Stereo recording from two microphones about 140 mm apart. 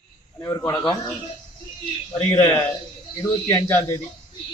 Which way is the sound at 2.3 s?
25° left (ahead or behind).